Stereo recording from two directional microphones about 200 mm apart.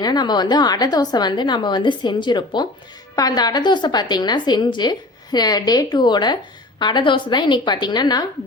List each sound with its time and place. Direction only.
0.0 s a woman's voice: 20° left (ahead or behind)